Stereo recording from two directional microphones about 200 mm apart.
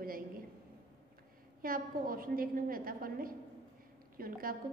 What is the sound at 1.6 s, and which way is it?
A woman's voice, 45° right (ahead or behind).